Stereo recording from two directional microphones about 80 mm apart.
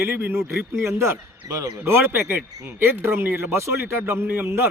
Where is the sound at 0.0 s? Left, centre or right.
Right.